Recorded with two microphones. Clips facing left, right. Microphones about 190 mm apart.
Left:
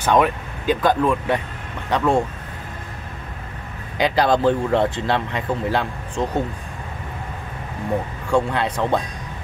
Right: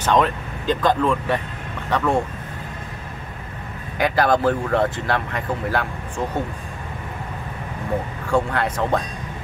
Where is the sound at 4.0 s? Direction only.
20° left (ahead or behind).